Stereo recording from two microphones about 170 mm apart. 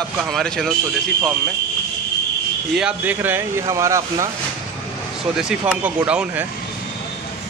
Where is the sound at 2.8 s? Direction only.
10° right (ahead or behind).